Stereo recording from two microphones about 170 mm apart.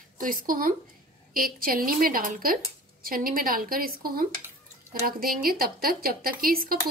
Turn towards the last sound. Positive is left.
turn(degrees=-60)  # may be behind; listen again after turning